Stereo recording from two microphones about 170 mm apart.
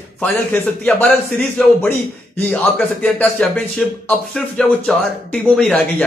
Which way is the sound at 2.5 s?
5° left (ahead or behind).